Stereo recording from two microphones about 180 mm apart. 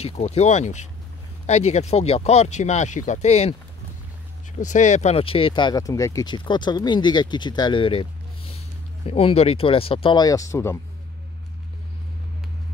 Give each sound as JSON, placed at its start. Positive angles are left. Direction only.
{"t": 0.0, "sound": "speech", "side_deg": 35}
{"t": 4.6, "sound": "speech", "side_deg": 40}